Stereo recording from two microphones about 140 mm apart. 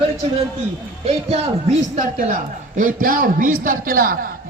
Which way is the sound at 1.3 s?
55° right (ahead or behind).